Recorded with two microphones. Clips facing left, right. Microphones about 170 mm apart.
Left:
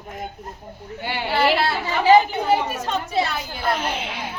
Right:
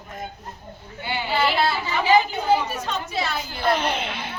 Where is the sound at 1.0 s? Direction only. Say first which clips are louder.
Left 2 dB; 60° left (ahead or behind).